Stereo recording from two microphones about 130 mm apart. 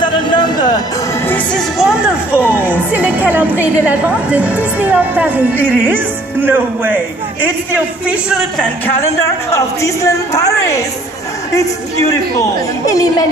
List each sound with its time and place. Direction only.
0.0 s a sound: 35° left (ahead or behind)
1.2 s music: 15° left (ahead or behind)
1.8 s a woman's voice: 5° right (ahead or behind)
8.1 s speech: 5° right (ahead or behind)
9.0 s a woman's voice: 25° left (ahead or behind)